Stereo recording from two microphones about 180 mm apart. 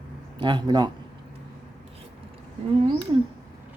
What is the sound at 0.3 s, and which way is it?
Speech, 25° right (ahead or behind).